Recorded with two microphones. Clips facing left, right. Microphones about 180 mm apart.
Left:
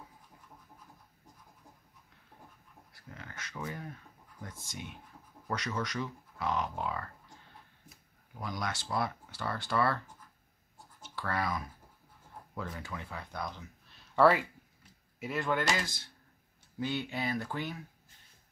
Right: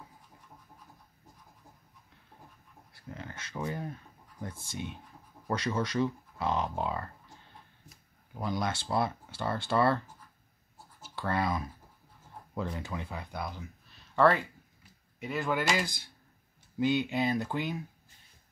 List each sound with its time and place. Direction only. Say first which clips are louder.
2.9 s speech: right 6 dB; 25° right (ahead or behind)
8.4 s speech: right 5 dB; 25° right (ahead or behind)
11.1 s speech: right 3 dB; 25° right (ahead or behind); by 15.6 s centre (ahead or behind)
15.7 s speech: right 3 dB; 15° right (ahead or behind)